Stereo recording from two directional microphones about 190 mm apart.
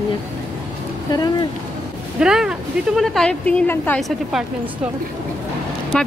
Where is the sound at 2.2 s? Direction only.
5° right (ahead or behind).